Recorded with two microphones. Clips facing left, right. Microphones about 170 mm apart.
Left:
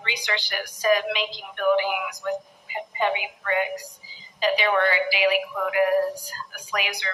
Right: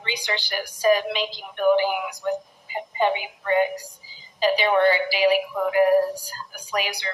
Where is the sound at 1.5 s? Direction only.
35° right (ahead or behind).